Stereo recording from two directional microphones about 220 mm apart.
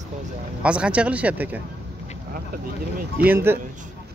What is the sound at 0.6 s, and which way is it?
Speech, 5° right (ahead or behind).